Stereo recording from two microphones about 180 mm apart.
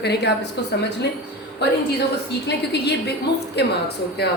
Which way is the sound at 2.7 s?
65° left (ahead or behind).